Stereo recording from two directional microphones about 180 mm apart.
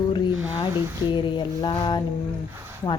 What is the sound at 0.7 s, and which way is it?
Speech, 15° right (ahead or behind).